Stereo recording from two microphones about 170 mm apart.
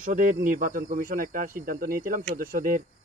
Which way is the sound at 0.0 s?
50° right (ahead or behind).